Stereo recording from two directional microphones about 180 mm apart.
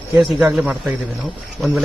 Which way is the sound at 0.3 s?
5° right (ahead or behind).